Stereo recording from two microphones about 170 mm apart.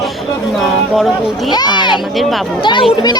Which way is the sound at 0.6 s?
Centre (ahead or behind).